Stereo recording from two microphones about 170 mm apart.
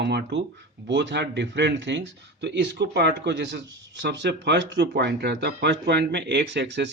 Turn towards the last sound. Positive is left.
turn(degrees=-90)